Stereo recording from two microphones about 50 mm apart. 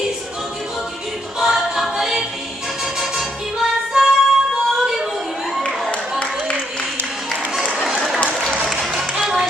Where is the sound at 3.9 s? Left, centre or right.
Centre.